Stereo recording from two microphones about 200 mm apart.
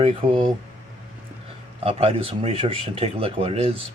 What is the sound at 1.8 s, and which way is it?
Speech, 30° right (ahead or behind).